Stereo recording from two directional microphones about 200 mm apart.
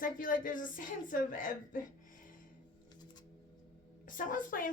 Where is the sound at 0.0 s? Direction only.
45° left (ahead or behind).